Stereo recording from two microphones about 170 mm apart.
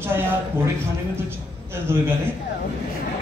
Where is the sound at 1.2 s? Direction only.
15° right (ahead or behind).